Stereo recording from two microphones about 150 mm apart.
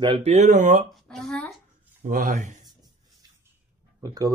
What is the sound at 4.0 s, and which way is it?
Speech, 25° right (ahead or behind).